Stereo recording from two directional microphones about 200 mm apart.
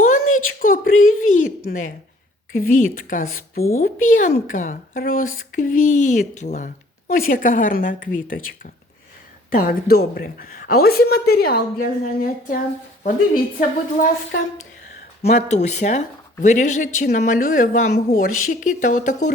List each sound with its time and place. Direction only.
0.0 s a sound: 40° left (ahead or behind)
1.6 s a woman's voice: 40° left (ahead or behind)
9.6 s a woman's voice: 45° left (ahead or behind)
15.2 s speech: 35° left (ahead or behind)